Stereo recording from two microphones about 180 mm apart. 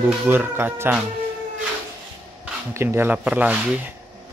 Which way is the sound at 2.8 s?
10° right (ahead or behind).